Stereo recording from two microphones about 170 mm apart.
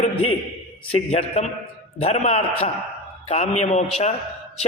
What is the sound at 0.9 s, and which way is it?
A man's voice, 40° left (ahead or behind).